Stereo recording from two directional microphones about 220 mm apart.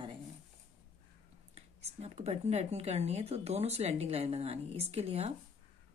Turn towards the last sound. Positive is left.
turn(degrees=-30)  # may be behind; listen again after turning